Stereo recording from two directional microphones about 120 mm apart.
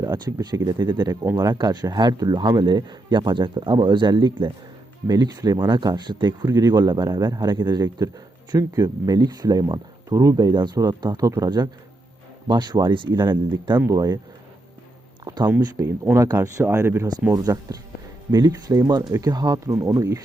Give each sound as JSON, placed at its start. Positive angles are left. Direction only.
{"t": 0.0, "sound": "speech", "side_deg": -30}
{"t": 13.9, "sound": "speech", "side_deg": -30}
{"t": 15.2, "sound": "speech", "side_deg": -30}